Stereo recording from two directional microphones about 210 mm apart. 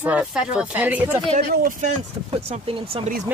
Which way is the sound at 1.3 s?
40° right (ahead or behind).